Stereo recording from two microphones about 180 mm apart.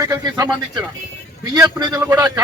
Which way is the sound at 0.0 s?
20° right (ahead or behind).